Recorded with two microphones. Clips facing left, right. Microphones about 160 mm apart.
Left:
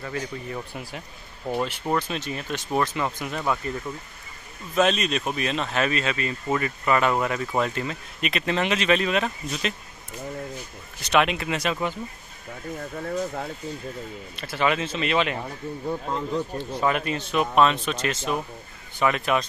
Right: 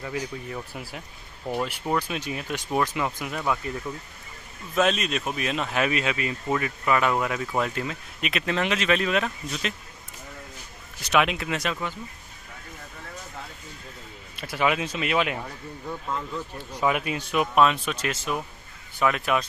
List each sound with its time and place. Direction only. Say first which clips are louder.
0.0 s speech: even; 5° right (ahead or behind)
4.7 s speech: left 2 dB; centre (ahead or behind)
6.5 s speech: left 1 dB; centre (ahead or behind)
11.0 s speech: left 1 dB; 5° right (ahead or behind)
14.3 s speech: even; 10° right (ahead or behind)
15.9 s speech: left 4 dB; 30° left (ahead or behind)
16.7 s speech: even; 5° right (ahead or behind)